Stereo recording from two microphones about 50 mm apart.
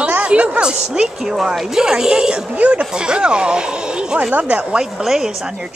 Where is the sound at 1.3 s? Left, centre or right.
Centre.